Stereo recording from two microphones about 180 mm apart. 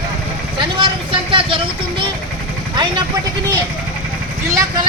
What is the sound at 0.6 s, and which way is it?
Vehicle, 30° right (ahead or behind).